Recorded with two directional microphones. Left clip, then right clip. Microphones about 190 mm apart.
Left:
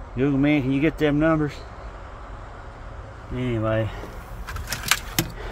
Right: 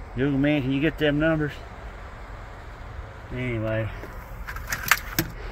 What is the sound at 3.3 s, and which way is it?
Speech, 20° left (ahead or behind).